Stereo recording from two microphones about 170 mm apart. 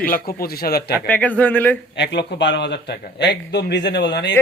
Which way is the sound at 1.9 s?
90° left.